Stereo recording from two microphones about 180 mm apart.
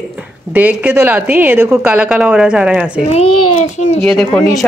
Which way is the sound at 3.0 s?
35° left (ahead or behind).